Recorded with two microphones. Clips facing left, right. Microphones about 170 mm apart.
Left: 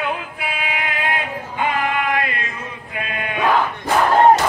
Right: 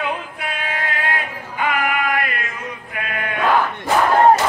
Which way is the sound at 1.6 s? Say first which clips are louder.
Even; 25° left (ahead or behind).